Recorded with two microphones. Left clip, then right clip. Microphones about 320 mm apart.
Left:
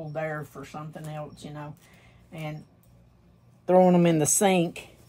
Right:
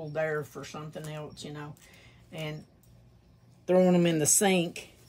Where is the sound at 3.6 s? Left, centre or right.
Centre.